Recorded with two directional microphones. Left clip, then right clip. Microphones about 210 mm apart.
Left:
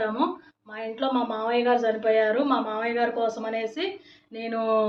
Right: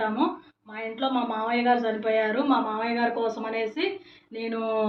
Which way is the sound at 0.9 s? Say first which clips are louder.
Left 1 dB; 15° left (ahead or behind).